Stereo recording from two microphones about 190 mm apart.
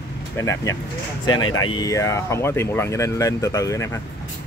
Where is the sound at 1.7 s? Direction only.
20° left (ahead or behind).